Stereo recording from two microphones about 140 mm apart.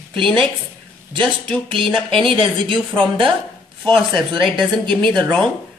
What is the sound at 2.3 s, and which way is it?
Speech, 35° right (ahead or behind).